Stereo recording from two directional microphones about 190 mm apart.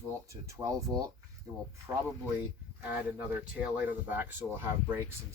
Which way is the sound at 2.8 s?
10° right (ahead or behind).